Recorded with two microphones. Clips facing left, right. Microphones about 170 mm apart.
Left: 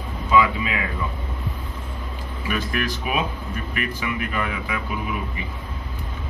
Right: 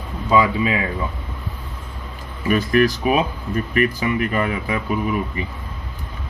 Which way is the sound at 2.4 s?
40° right (ahead or behind).